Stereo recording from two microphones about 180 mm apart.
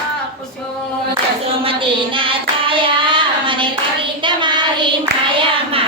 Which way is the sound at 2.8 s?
25° right (ahead or behind).